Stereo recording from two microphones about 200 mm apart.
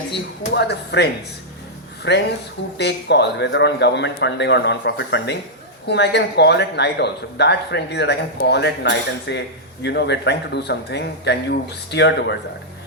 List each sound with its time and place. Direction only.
0.1 s a man's voice: 55° left (ahead or behind)
2.1 s a man's voice: 60° left (ahead or behind)